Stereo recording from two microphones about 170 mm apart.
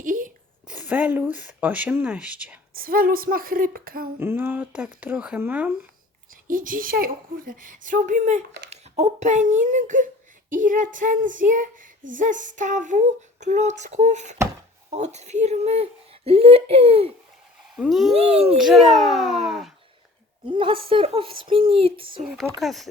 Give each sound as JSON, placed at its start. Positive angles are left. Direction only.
{"t": 0.0, "sound": "a sound", "side_deg": -50}
{"t": 0.7, "sound": "speech", "side_deg": -10}
{"t": 2.7, "sound": "a sound", "side_deg": -60}
{"t": 4.2, "sound": "speech", "side_deg": -10}
{"t": 6.5, "sound": "a sound", "side_deg": -55}
{"t": 8.7, "sound": "a child's voice", "side_deg": -40}
{"t": 10.5, "sound": "a sound", "side_deg": -50}
{"t": 14.8, "sound": "speech", "side_deg": -40}
{"t": 17.7, "sound": "speech", "side_deg": 0}
{"t": 18.1, "sound": "speech", "side_deg": -35}
{"t": 18.4, "sound": "speech", "side_deg": -5}
{"t": 20.4, "sound": "speech", "side_deg": -30}
{"t": 22.2, "sound": "speech", "side_deg": 0}